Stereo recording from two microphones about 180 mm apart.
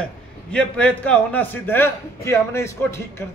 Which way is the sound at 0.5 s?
5° left (ahead or behind).